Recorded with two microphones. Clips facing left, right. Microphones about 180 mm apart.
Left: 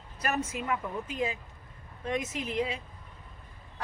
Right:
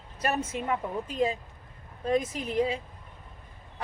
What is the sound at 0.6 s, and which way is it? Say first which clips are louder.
Speech: right 2 dB; 35° right (ahead or behind).